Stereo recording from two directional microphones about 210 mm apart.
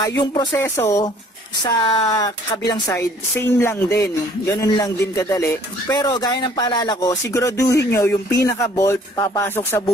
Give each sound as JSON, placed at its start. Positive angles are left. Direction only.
{"t": 0.0, "sound": "speech", "side_deg": 20}